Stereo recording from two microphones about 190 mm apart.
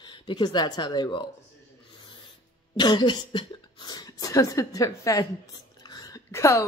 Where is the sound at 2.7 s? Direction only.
20° left (ahead or behind).